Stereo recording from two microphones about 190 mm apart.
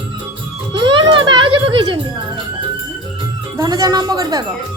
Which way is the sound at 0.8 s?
25° right (ahead or behind).